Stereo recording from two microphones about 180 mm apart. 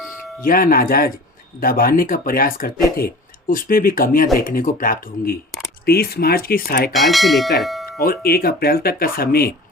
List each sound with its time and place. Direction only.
0.4 s speech: 50° left (ahead or behind)
6.9 s speech: centre (ahead or behind)
7.9 s speech: 55° left (ahead or behind)